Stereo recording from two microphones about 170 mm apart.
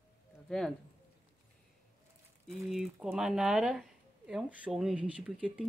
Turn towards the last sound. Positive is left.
turn(degrees=-5)  # may be behind; listen again after turning